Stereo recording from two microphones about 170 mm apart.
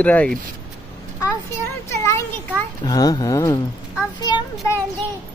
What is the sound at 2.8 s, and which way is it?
Speech, 20° left (ahead or behind).